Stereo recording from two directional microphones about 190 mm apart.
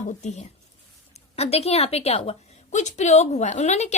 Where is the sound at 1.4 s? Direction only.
30° left (ahead or behind).